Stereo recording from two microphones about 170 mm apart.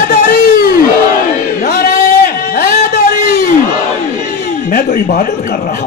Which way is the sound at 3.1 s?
55° left (ahead or behind).